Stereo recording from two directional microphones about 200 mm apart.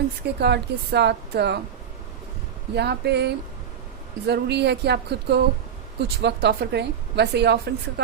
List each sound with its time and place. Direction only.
0.3 s a woman's voice: 55° right (ahead or behind)
2.7 s a woman's voice: 55° right (ahead or behind)